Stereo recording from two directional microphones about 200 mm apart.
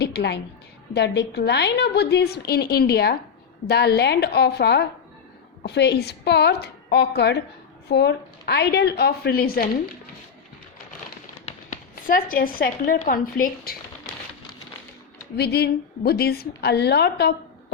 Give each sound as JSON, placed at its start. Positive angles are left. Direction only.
{"t": 0.0, "sound": "a woman's voice", "side_deg": 55}
{"t": 11.4, "sound": "speech", "side_deg": 40}
{"t": 15.4, "sound": "a woman's voice", "side_deg": 55}